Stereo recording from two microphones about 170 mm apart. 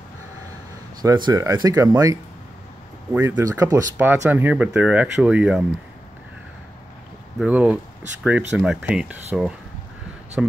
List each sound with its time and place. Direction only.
1.0 s speech: 25° right (ahead or behind); by 5.7 s 5° right (ahead or behind)
7.3 s speech: 10° right (ahead or behind)